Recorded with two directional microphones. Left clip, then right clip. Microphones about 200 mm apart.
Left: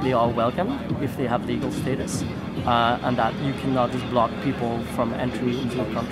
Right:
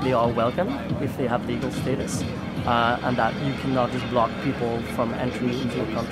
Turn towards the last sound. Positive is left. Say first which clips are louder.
# left 1 dB
turn(degrees=5)  # may be behind; listen again after turning